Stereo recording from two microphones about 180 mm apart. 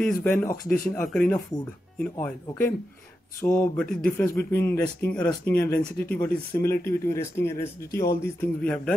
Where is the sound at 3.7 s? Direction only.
5° left (ahead or behind).